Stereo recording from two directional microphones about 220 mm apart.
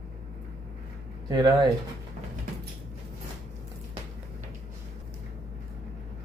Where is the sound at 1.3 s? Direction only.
20° right (ahead or behind).